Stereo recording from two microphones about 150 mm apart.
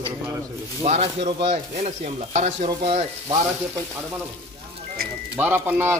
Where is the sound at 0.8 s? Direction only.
45° right (ahead or behind).